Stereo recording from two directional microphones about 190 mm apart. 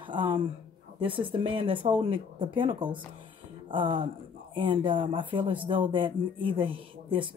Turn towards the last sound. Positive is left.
turn(degrees=-25)  # may be behind; listen again after turning